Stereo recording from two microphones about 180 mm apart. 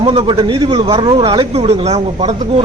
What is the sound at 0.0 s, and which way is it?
A man's voice, 30° right (ahead or behind).